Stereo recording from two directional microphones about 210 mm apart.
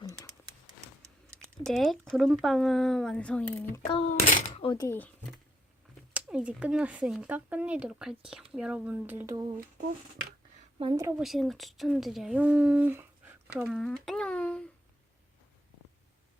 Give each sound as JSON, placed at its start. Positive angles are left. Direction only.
{"t": 0.0, "sound": "a sound", "side_deg": 15}
{"t": 1.4, "sound": "speech", "side_deg": 5}
{"t": 3.9, "sound": "a child's voice", "side_deg": 40}
{"t": 4.6, "sound": "speech", "side_deg": 20}
{"t": 6.1, "sound": "speech", "side_deg": -5}
{"t": 10.8, "sound": "a woman's voice", "side_deg": -25}
{"t": 11.2, "sound": "speech", "side_deg": 0}
{"t": 13.7, "sound": "speech", "side_deg": 5}